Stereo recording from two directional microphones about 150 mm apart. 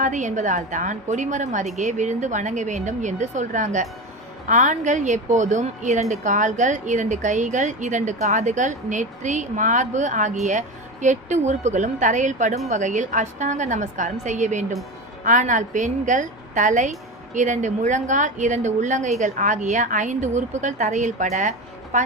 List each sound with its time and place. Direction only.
0.0 s a woman's voice: 55° right (ahead or behind)